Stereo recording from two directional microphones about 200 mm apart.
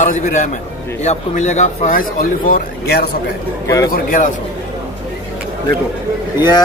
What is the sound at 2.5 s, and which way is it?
Speech, 50° left (ahead or behind).